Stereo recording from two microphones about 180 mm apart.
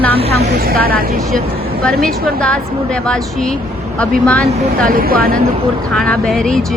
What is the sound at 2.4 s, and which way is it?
A woman's voice, 5° left (ahead or behind).